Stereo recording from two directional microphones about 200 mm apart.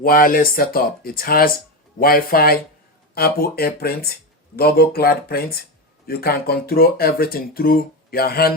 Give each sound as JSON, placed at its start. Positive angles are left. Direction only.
{"t": 0.0, "sound": "speech", "side_deg": 45}